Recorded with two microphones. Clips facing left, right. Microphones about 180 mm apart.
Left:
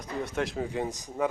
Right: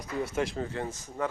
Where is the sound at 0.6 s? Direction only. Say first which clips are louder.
Left 3 dB; 15° left (ahead or behind).